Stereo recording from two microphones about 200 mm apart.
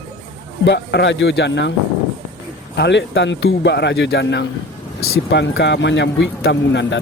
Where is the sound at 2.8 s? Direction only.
60° left (ahead or behind).